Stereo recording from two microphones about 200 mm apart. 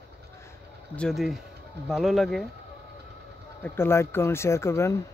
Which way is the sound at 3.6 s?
10° left (ahead or behind).